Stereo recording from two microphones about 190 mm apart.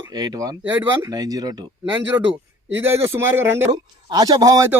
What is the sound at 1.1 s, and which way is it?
Speech, 20° right (ahead or behind).